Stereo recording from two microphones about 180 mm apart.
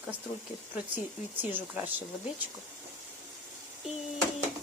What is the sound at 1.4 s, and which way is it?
Speech, 10° right (ahead or behind).